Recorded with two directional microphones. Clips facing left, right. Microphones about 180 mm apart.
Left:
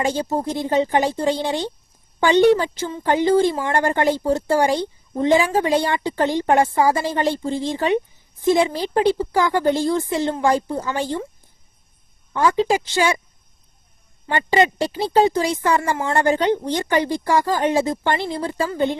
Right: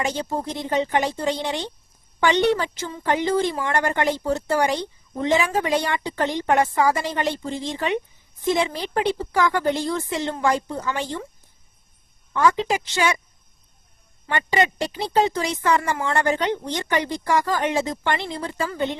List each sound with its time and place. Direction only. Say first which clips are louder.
0.0 s speech: left 4 dB; 30° left (ahead or behind)
12.3 s speech: left 2 dB; 30° left (ahead or behind)
14.3 s speech: left 4 dB; 30° left (ahead or behind)